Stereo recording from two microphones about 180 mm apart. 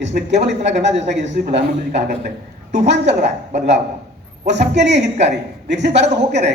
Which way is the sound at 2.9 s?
75° right (ahead or behind).